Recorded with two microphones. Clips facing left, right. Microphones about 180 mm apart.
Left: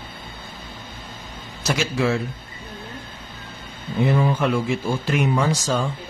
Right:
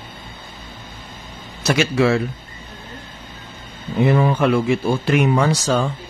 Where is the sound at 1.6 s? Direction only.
70° right (ahead or behind).